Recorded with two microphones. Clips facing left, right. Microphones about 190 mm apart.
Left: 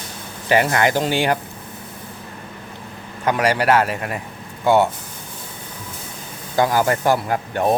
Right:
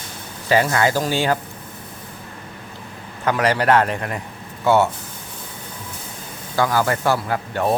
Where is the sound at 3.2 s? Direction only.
15° left (ahead or behind).